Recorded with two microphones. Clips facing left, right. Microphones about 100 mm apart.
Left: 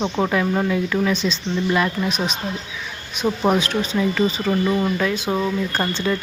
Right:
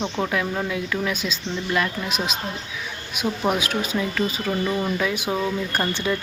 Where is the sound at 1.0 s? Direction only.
5° right (ahead or behind).